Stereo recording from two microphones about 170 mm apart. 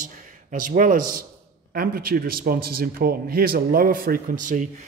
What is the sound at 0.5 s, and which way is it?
A man's voice, 50° right (ahead or behind).